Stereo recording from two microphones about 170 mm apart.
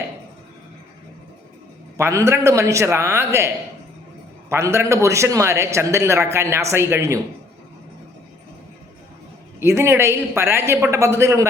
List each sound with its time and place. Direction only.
2.0 s a man's voice: 15° right (ahead or behind)
9.6 s a man's voice: 15° right (ahead or behind)